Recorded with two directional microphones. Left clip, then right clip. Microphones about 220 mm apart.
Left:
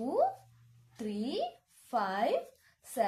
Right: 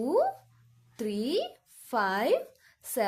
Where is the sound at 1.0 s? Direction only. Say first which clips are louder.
Right 5 dB; 50° right (ahead or behind).